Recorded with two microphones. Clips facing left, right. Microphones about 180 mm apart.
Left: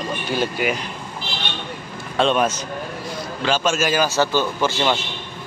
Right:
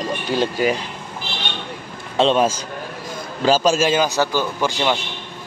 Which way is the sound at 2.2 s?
25° right (ahead or behind).